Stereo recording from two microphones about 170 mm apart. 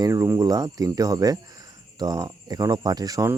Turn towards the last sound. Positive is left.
turn(degrees=-20)  # may be behind; listen again after turning